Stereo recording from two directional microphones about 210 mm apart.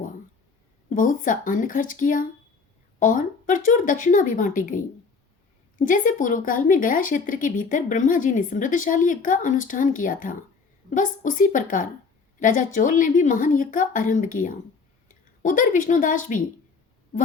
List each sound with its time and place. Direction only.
0.9 s speech: 40° left (ahead or behind)
5.8 s speech: 40° left (ahead or behind)